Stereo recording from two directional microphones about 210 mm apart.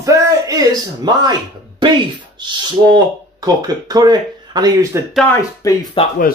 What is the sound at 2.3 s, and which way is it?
Speech, 20° right (ahead or behind).